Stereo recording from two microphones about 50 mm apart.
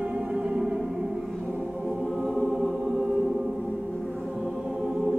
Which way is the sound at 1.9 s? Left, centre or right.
Centre.